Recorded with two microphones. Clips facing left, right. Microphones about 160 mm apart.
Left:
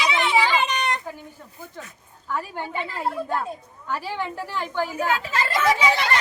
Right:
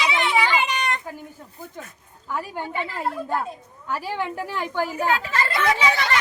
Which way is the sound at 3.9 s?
10° right (ahead or behind).